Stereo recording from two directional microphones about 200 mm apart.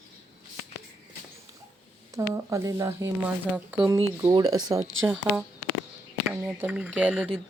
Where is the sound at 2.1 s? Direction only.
15° right (ahead or behind).